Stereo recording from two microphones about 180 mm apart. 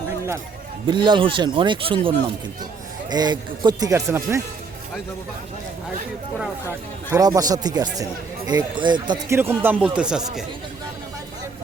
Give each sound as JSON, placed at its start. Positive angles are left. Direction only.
{"t": 0.9, "sound": "speech", "side_deg": -25}
{"t": 7.1, "sound": "speech", "side_deg": -20}
{"t": 9.4, "sound": "speech", "side_deg": -10}